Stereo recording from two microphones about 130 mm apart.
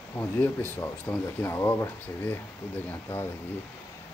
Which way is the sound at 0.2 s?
15° left (ahead or behind).